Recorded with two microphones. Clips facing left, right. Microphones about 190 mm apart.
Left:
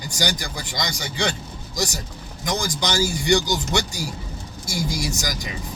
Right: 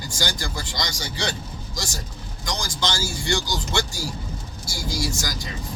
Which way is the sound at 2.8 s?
20° left (ahead or behind).